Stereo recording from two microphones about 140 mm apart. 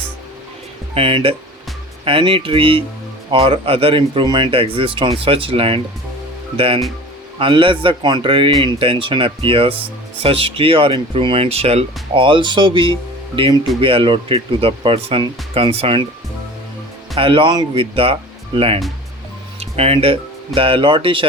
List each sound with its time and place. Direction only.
0.9 s speech: 40° right (ahead or behind)
7.3 s speech: 35° right (ahead or behind)
17.2 s speech: 40° right (ahead or behind)
19.5 s a sound: 45° right (ahead or behind)
20.6 s speech: 40° right (ahead or behind)